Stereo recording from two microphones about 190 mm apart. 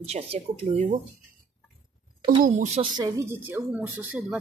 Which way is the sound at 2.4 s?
40° right (ahead or behind).